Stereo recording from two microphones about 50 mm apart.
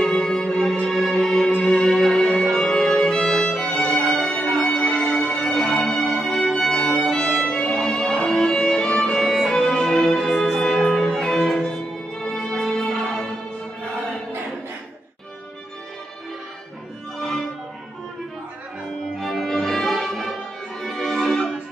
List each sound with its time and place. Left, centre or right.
0.0 s music: centre
2.5 s violin: centre
3.9 s music: centre
4.6 s music: left
7.7 s music: centre
9.2 s music: centre
17.2 s music: centre
19.1 s music: centre